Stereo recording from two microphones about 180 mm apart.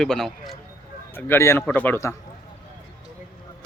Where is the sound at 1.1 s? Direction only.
15° left (ahead or behind).